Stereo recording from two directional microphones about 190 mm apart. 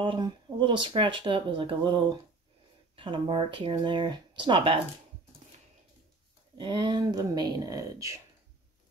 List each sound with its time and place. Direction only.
0.0 s speech: 25° right (ahead or behind)
3.0 s speech: 25° right (ahead or behind)
6.6 s speech: 25° right (ahead or behind)